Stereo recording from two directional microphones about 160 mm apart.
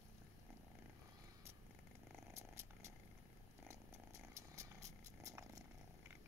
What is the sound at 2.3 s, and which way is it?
Purr, 15° right (ahead or behind).